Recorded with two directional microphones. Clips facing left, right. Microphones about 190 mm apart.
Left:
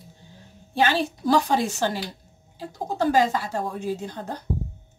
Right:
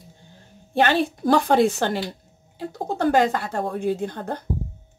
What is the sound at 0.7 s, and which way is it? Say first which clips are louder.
Speech: right 3 dB; 55° right (ahead or behind).